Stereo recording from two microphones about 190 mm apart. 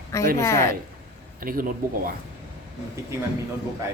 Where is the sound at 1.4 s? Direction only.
50° right (ahead or behind).